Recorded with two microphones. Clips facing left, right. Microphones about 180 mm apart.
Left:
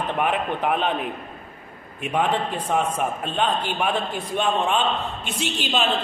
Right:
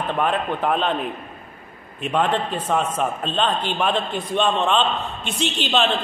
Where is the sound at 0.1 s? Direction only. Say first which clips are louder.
Right 2 dB; 15° left (ahead or behind).